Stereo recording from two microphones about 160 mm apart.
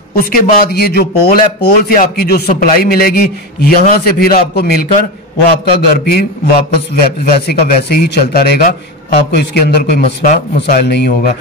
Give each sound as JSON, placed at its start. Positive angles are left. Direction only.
{"t": 0.1, "sound": "a man's voice", "side_deg": 65}
{"t": 7.2, "sound": "speech", "side_deg": 60}
{"t": 10.0, "sound": "a man's voice", "side_deg": 50}
{"t": 10.6, "sound": "a man's voice", "side_deg": 90}